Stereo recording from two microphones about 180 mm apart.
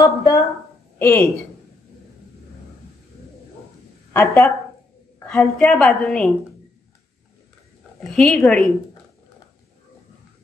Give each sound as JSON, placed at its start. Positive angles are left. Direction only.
{"t": 0.0, "sound": "a woman's voice", "side_deg": 20}
{"t": 4.1, "sound": "speech", "side_deg": 15}
{"t": 5.2, "sound": "a woman's voice", "side_deg": 5}
{"t": 8.2, "sound": "a woman's voice", "side_deg": 0}